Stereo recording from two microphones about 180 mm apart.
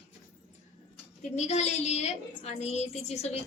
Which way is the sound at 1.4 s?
35° left (ahead or behind).